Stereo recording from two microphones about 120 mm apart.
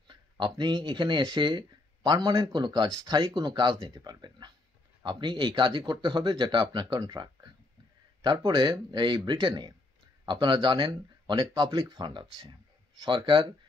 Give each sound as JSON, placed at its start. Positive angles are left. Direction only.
{"t": 0.1, "sound": "speech", "side_deg": -40}